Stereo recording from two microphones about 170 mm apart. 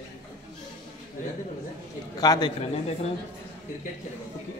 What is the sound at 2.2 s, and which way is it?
Speech, 25° left (ahead or behind).